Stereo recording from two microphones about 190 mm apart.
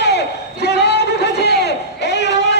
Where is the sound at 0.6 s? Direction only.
60° left (ahead or behind).